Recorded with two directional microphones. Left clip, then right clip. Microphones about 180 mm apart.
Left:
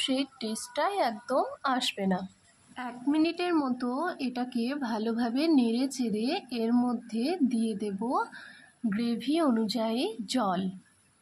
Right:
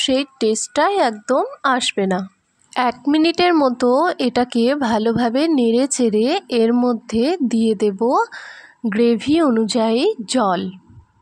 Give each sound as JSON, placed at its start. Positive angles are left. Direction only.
{"t": 0.0, "sound": "a woman's voice", "side_deg": -40}
{"t": 2.7, "sound": "a woman's voice", "side_deg": -60}